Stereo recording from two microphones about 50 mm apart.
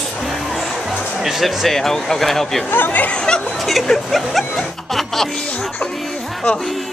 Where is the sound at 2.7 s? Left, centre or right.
Left.